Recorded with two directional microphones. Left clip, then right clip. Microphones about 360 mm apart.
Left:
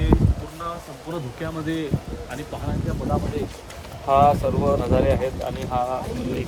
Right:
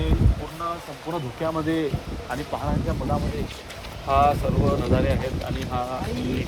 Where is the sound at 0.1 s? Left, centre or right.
Left.